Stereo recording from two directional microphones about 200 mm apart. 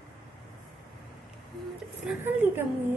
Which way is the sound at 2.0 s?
10° right (ahead or behind).